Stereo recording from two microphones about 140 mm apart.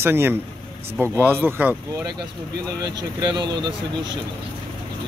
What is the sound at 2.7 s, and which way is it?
Speech, 30° right (ahead or behind).